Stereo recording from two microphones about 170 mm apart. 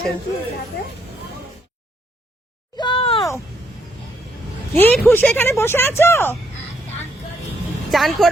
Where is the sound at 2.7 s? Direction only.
30° left (ahead or behind).